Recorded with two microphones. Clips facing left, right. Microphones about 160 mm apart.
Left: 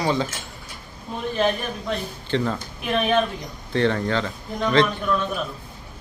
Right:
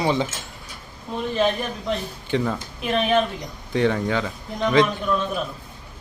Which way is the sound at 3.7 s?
10° right (ahead or behind).